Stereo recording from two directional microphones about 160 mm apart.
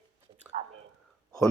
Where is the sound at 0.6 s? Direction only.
45° right (ahead or behind).